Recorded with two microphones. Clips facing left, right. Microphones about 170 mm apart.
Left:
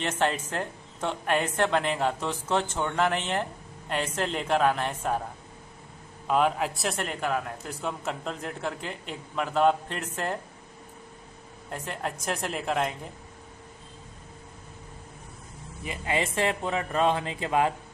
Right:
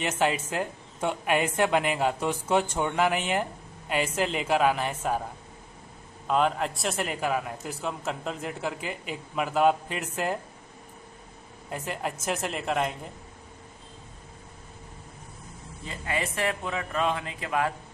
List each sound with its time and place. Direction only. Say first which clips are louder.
0.2 s a man's voice: right 2 dB; 5° right (ahead or behind)
6.2 s a man's voice: even; centre (ahead or behind)
11.7 s a man's voice: right 1 dB; 5° right (ahead or behind)
15.8 s speech: left 3 dB; 15° left (ahead or behind)
16.2 s a man's voice: left 2 dB; 25° left (ahead or behind)